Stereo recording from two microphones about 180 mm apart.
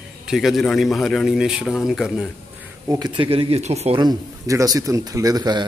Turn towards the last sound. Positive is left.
turn(degrees=-25)  # may be behind; listen again after turning